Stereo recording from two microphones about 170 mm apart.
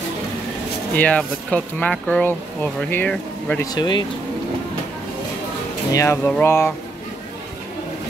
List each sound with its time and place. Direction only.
0.9 s speech: 10° left (ahead or behind)
3.6 s speech: 25° left (ahead or behind)
5.9 s speech: 20° left (ahead or behind)